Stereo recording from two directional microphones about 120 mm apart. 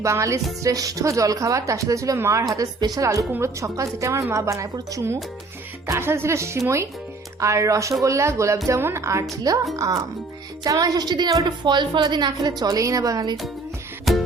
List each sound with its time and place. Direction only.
0.0 s a woman's voice: 25° right (ahead or behind)
14.0 s music: centre (ahead or behind)